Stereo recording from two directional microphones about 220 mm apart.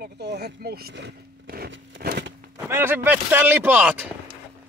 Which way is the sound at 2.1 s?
45° right (ahead or behind).